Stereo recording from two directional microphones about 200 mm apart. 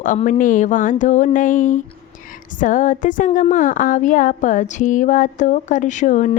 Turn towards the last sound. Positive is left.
turn(degrees=40)  # may be behind; listen again after turning